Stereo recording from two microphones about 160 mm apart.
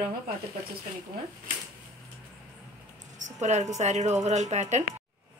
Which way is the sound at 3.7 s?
45° right (ahead or behind).